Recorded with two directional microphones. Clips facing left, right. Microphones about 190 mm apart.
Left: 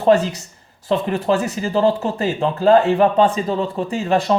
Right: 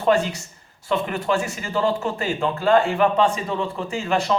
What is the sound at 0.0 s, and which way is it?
Speech, 35° left (ahead or behind).